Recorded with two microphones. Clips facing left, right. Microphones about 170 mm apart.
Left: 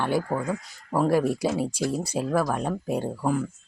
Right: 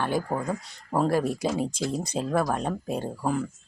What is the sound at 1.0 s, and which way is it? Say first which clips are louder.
Speech: left 2 dB; 15° left (ahead or behind).